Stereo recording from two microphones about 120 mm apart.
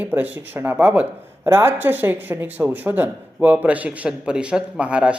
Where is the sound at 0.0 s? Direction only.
15° right (ahead or behind).